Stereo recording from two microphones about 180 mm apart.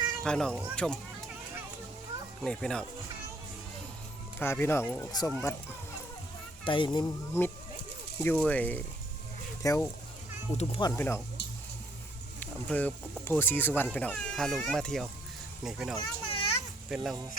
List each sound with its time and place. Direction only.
0.3 s speech: 5° left (ahead or behind)
2.4 s speech: 5° left (ahead or behind)
4.4 s speech: 10° left (ahead or behind)
6.7 s speech: 25° left (ahead or behind)
8.2 s speech: 10° left (ahead or behind)
10.6 s speech: 35° left (ahead or behind)
10.8 s speech: 15° left (ahead or behind)
11.4 s a sound: 70° left (ahead or behind)
12.4 s speech: 10° left (ahead or behind)
16.0 s children playing: 30° left (ahead or behind)
16.9 s speech: centre (ahead or behind)